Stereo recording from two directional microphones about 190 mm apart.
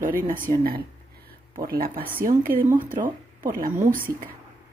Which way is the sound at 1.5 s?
50° right (ahead or behind).